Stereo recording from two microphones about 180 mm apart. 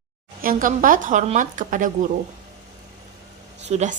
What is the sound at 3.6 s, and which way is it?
Speech, 40° right (ahead or behind).